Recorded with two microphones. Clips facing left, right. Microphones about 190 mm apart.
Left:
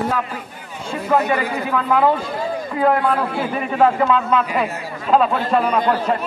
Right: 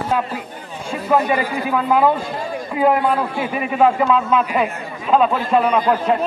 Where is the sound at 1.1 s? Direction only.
10° right (ahead or behind).